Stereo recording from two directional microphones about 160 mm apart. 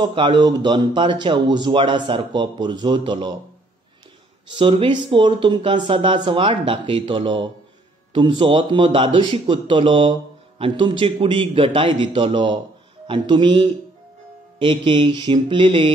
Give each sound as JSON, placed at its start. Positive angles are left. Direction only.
{"t": 0.0, "sound": "speech", "side_deg": -30}
{"t": 4.5, "sound": "speech", "side_deg": -30}